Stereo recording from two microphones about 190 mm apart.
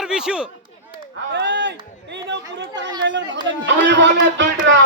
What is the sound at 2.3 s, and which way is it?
Chatter, 70° right (ahead or behind).